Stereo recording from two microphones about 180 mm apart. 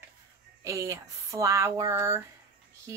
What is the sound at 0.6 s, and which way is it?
Speech, 15° right (ahead or behind).